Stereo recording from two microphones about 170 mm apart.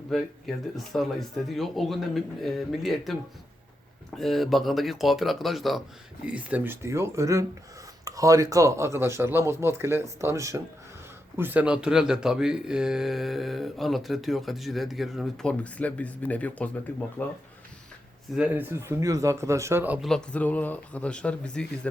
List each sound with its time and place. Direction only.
0.1 s speech: centre (ahead or behind)
4.2 s a man's voice: centre (ahead or behind)
18.3 s a man's voice: 10° right (ahead or behind)
20.1 s speech: 5° left (ahead or behind)